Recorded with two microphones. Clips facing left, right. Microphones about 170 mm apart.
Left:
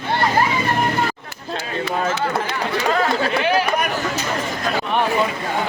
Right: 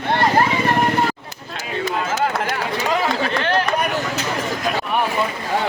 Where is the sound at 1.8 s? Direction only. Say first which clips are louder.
Right 1 dB; 45° right (ahead or behind).